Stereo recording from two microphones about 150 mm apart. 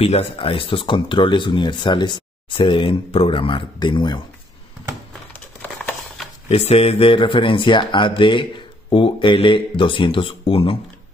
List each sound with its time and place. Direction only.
0.0 s speech: 40° left (ahead or behind)
6.5 s speech: 40° left (ahead or behind)